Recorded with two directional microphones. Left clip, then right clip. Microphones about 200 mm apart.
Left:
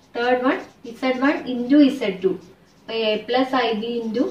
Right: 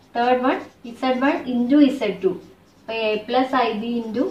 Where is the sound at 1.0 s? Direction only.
15° right (ahead or behind).